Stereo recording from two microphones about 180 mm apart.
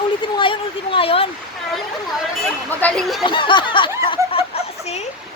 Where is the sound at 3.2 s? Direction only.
25° left (ahead or behind).